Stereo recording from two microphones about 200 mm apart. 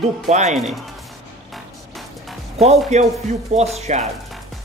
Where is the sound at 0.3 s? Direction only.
35° right (ahead or behind).